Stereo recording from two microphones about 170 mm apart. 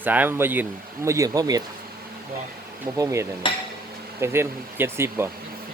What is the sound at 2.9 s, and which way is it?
Speech, 20° right (ahead or behind).